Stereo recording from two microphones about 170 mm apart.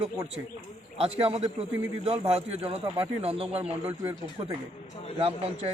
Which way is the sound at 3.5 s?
10° right (ahead or behind).